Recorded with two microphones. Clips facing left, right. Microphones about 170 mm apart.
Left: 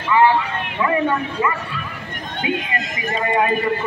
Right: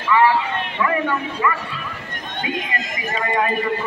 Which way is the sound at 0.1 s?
25° left (ahead or behind).